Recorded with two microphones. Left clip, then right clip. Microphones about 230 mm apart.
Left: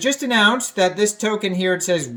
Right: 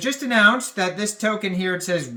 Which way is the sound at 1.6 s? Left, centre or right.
Centre.